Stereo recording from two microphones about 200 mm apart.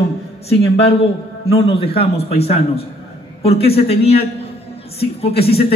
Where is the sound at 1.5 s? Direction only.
30° left (ahead or behind).